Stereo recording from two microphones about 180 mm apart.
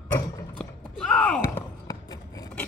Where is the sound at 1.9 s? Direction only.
20° left (ahead or behind).